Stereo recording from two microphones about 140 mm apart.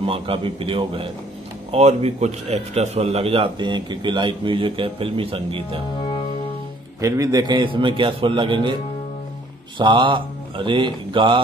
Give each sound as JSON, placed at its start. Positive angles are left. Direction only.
{"t": 0.0, "sound": "a man's voice", "side_deg": -40}
{"t": 7.0, "sound": "a man's voice", "side_deg": -25}
{"t": 9.8, "sound": "a man's voice", "side_deg": -35}